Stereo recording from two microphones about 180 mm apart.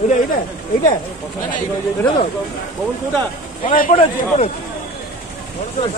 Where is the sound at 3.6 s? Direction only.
45° left (ahead or behind).